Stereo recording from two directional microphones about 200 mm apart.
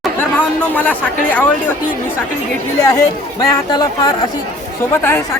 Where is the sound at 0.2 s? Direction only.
10° left (ahead or behind).